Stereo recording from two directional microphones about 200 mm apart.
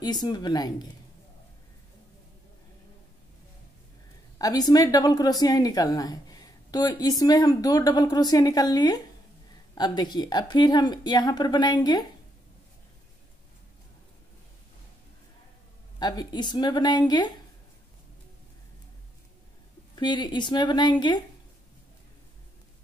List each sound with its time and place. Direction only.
0.0 s a woman's voice: 20° left (ahead or behind)
4.4 s a woman's voice: 20° left (ahead or behind)
16.0 s a woman's voice: 20° left (ahead or behind)
20.0 s a woman's voice: 20° left (ahead or behind)